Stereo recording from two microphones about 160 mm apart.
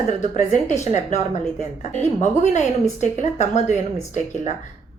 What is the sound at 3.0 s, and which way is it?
Speech, 45° left (ahead or behind).